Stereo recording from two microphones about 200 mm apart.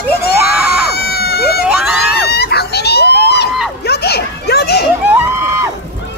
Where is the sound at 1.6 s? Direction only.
5° right (ahead or behind).